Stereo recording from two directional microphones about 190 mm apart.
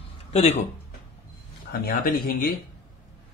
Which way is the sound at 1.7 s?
50° left (ahead or behind).